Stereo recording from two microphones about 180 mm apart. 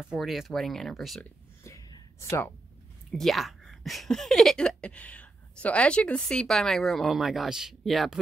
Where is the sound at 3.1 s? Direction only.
Centre (ahead or behind).